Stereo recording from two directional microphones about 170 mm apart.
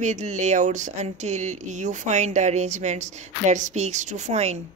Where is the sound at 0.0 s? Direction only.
45° right (ahead or behind).